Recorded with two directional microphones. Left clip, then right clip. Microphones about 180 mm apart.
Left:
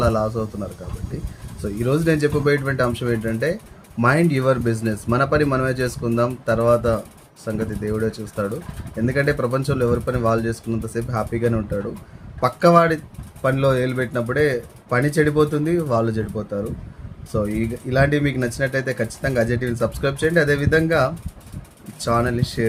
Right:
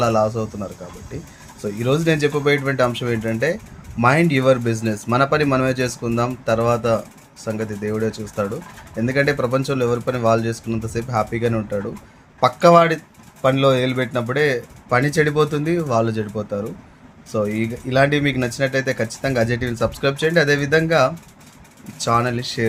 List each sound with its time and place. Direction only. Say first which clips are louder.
0.0 s speech: right 3 dB; 10° left (ahead or behind)
1.8 s speech: right 1 dB; 5° left (ahead or behind)